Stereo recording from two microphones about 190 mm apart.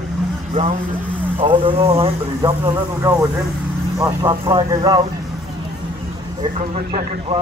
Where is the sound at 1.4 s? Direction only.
30° right (ahead or behind).